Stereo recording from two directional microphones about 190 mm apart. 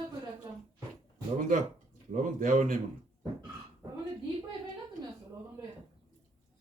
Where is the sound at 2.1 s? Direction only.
40° right (ahead or behind).